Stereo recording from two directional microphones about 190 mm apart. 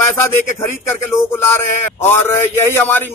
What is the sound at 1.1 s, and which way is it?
Speech, 10° left (ahead or behind).